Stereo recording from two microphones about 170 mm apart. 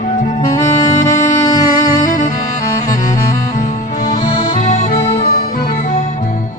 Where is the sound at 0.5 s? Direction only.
20° left (ahead or behind).